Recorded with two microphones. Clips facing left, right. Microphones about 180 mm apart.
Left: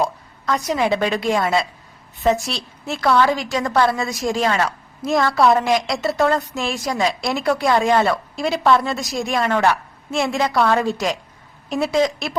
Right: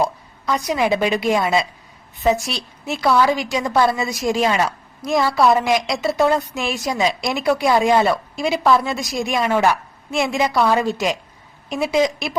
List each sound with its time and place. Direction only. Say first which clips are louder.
0.0 s a woman's voice: right 1 dB; 5° right (ahead or behind)
4.3 s a woman's voice: right 2 dB; 15° right (ahead or behind)
5.0 s a woman's voice: even; centre (ahead or behind)
7.0 s a woman's voice: right 1 dB; 20° right (ahead or behind)
7.3 s a woman's voice: right 1 dB; centre (ahead or behind)